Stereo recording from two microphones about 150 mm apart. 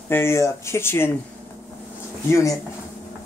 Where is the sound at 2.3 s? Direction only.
20° left (ahead or behind).